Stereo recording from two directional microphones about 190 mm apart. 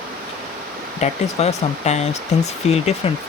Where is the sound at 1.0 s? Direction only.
35° left (ahead or behind).